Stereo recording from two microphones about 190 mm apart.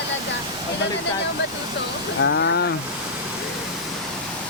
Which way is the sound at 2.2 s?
75° left (ahead or behind).